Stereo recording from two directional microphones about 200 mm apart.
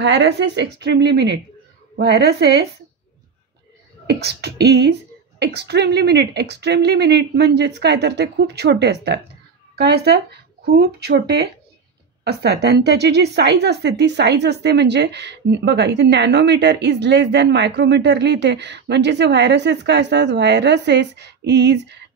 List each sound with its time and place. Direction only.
0.0 s a woman's voice: 60° right (ahead or behind)
4.1 s a woman's voice: 55° right (ahead or behind)